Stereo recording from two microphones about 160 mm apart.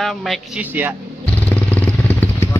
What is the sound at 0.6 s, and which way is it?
Speech, 10° right (ahead or behind).